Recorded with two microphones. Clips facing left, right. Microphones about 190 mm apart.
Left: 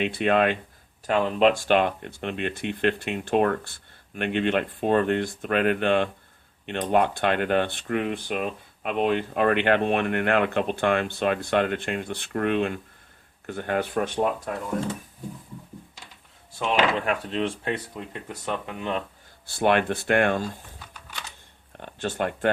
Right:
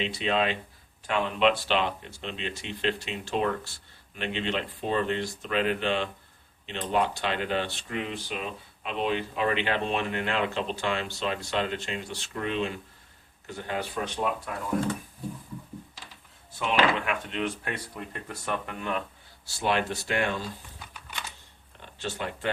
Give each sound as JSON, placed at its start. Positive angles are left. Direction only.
{"t": 0.0, "sound": "speech", "side_deg": 55}
{"t": 1.0, "sound": "speech", "side_deg": 40}
{"t": 17.1, "sound": "speech", "side_deg": 35}
{"t": 17.9, "sound": "speech", "side_deg": 15}
{"t": 19.5, "sound": "speech", "side_deg": 55}
{"t": 21.8, "sound": "speech", "side_deg": 55}